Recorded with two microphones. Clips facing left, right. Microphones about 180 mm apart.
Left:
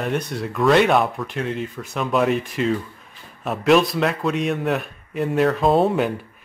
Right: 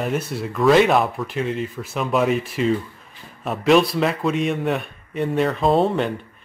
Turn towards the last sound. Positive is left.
turn(degrees=0)  # may be behind; listen again after turning